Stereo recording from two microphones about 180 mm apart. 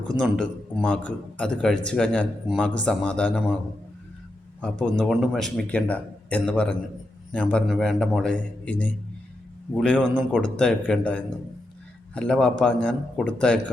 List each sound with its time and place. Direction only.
0.2 s a man's voice: 5° left (ahead or behind)
4.6 s a man's voice: 5° left (ahead or behind)